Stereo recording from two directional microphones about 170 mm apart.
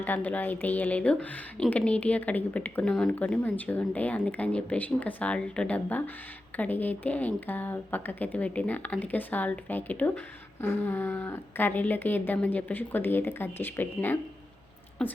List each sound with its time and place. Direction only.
0.0 s a woman's voice: 10° left (ahead or behind)